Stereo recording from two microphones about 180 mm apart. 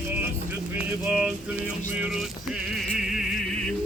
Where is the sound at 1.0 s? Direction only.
5° right (ahead or behind).